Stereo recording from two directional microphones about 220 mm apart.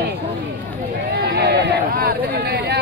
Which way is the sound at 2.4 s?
50° right (ahead or behind).